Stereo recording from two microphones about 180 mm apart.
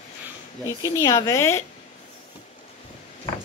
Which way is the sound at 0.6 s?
15° left (ahead or behind).